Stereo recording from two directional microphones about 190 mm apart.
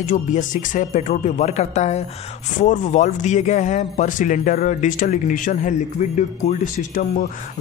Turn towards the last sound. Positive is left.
turn(degrees=40)  # may be behind; listen again after turning